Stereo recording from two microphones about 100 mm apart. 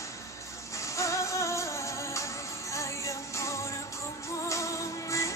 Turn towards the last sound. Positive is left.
turn(degrees=30)  # may be behind; listen again after turning